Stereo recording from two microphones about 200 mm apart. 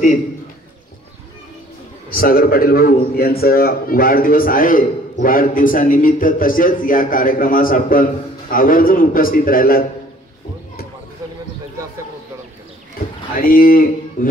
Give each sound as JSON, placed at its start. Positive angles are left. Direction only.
{"t": 2.0, "sound": "a man's voice", "side_deg": 45}
{"t": 13.4, "sound": "a man's voice", "side_deg": 45}